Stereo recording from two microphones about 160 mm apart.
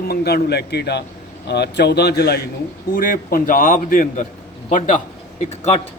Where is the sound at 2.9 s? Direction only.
65° left (ahead or behind).